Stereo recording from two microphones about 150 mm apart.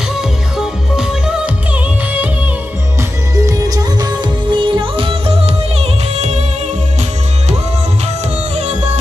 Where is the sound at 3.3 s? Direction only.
20° right (ahead or behind).